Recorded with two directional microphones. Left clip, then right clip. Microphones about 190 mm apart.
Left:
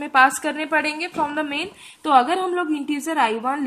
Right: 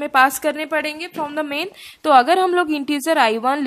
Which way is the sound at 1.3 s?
45° right (ahead or behind).